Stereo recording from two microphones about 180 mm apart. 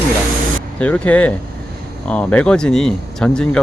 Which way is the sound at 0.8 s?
10° left (ahead or behind).